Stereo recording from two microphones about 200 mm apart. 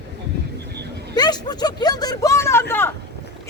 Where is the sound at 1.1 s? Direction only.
20° left (ahead or behind).